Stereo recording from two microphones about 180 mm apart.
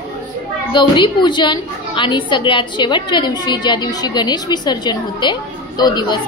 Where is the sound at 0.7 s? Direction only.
25° left (ahead or behind).